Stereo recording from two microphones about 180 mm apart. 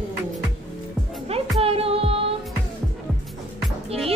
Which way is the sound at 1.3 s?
35° right (ahead or behind).